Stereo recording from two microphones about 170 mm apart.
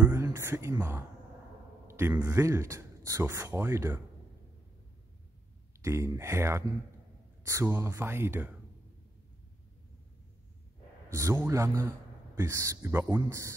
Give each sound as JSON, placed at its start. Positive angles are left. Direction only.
{"t": 0.0, "sound": "a sound", "side_deg": -15}
{"t": 1.9, "sound": "speech", "side_deg": -15}
{"t": 5.8, "sound": "speech", "side_deg": -15}
{"t": 11.1, "sound": "speech", "side_deg": -15}